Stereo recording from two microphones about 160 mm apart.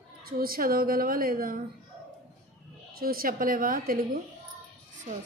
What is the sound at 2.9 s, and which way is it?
A woman's voice, 65° right (ahead or behind).